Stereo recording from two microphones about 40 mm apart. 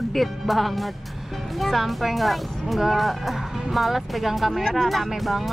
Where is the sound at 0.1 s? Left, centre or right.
Centre.